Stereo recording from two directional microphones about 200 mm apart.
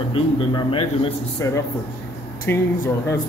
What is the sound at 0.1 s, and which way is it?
A man's voice, 25° left (ahead or behind).